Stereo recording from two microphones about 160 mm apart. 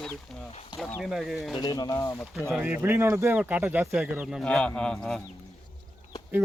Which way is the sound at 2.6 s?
15° right (ahead or behind).